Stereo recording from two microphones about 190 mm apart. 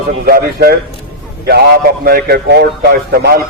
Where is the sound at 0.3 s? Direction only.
50° right (ahead or behind).